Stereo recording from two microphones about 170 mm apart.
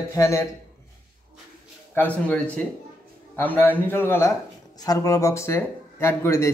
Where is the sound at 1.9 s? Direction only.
10° left (ahead or behind).